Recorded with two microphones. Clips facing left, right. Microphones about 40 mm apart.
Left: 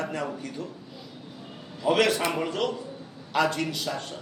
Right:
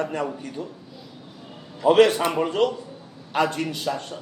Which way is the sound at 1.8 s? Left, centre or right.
Right.